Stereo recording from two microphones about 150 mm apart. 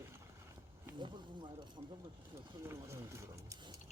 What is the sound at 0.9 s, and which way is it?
Speech, 30° right (ahead or behind).